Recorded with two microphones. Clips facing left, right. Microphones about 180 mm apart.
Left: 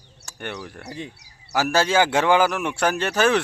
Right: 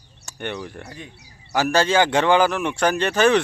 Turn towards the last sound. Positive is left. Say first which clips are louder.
# right 2 dB
turn(degrees=5)  # may be behind; listen again after turning